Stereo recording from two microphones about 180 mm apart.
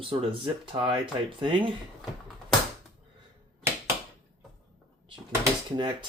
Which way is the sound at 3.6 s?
15° right (ahead or behind).